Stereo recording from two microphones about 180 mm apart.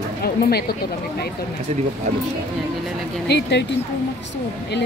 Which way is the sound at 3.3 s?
65° left (ahead or behind).